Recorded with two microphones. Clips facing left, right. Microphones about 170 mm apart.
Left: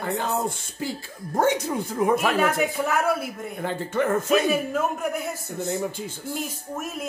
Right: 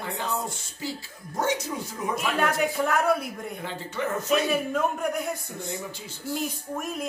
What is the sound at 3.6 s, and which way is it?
Speech, 50° left (ahead or behind).